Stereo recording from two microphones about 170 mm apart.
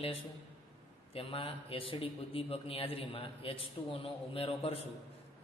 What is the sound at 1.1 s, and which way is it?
A man's voice, 35° left (ahead or behind).